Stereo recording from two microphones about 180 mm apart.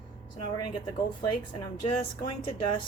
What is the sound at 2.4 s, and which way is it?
Speech, 30° left (ahead or behind).